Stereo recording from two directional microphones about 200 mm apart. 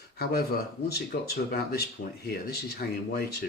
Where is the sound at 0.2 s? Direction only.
50° left (ahead or behind).